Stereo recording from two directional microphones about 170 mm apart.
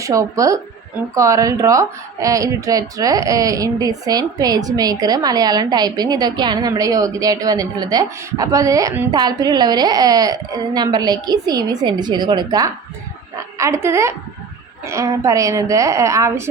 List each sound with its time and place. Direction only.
0.0 s a woman's voice: 20° right (ahead or behind)